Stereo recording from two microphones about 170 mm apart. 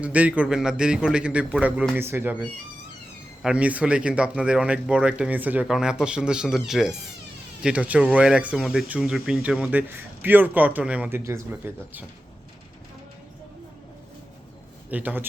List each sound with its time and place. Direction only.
0.0 s speech: 10° right (ahead or behind)
14.8 s a man's voice: 10° right (ahead or behind)